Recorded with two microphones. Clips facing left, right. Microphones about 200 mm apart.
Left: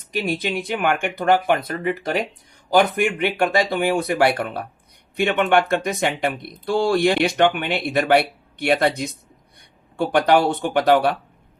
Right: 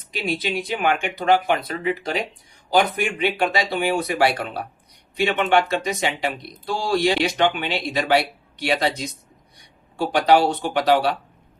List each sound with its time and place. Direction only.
0.1 s speech: 45° left (ahead or behind)